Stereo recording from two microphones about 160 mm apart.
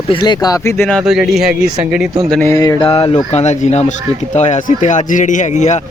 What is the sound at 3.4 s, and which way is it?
Speech, 45° left (ahead or behind).